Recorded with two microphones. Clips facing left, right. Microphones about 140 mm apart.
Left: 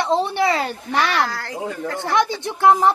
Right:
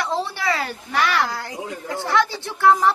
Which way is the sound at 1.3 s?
20° right (ahead or behind).